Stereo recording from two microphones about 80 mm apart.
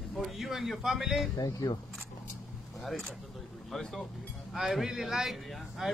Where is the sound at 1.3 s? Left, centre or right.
Left.